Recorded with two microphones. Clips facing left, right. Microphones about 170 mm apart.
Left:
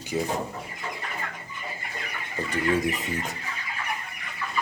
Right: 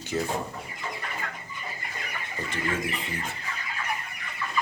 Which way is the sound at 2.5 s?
40° left (ahead or behind).